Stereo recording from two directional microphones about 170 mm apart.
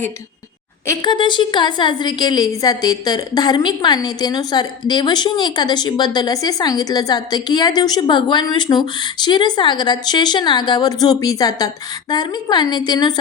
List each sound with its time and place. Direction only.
0.9 s a woman's voice: 25° left (ahead or behind)